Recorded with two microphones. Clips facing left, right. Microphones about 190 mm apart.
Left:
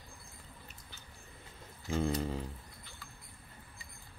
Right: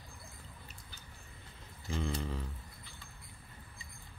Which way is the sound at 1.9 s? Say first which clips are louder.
Left 5 dB; 40° left (ahead or behind).